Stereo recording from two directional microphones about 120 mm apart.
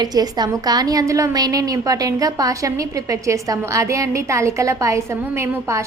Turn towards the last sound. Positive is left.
turn(degrees=-25)  # may be behind; listen again after turning